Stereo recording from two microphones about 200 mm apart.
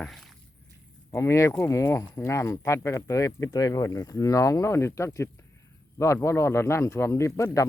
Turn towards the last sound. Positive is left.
turn(degrees=15)  # may be behind; listen again after turning